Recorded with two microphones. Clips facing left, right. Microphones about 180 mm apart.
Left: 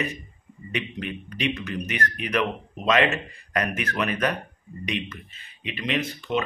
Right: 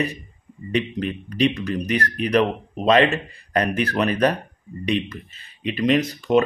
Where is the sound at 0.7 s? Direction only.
35° right (ahead or behind).